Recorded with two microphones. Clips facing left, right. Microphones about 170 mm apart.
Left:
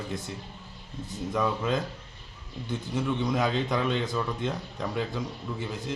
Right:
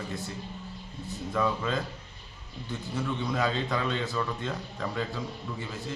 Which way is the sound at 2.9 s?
15° left (ahead or behind).